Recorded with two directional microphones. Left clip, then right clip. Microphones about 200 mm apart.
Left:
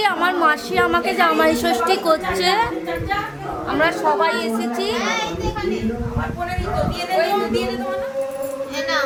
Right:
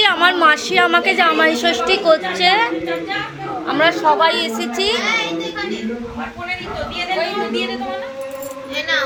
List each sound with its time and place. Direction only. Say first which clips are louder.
0.0 s a woman's voice: right 4 dB; 5° right (ahead or behind)
3.7 s a woman's voice: right 4 dB; 5° right (ahead or behind)
4.2 s a child's voice: right 3 dB; 15° right (ahead or behind)